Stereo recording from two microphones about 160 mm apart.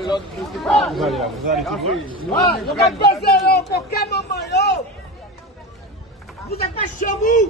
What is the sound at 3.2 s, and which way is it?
Speech, 90° left.